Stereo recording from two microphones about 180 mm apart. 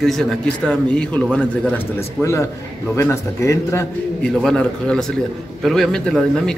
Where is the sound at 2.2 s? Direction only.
15° left (ahead or behind).